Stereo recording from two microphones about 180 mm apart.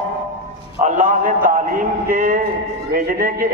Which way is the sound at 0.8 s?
45° right (ahead or behind).